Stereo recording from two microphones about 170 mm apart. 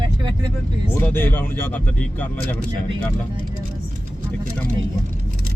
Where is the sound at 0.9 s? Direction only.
10° left (ahead or behind).